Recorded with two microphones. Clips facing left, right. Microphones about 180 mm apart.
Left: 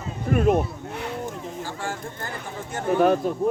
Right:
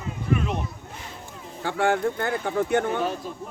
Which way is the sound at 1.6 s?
65° right (ahead or behind).